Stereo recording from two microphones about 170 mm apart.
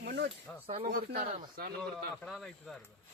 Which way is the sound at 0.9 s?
65° right (ahead or behind).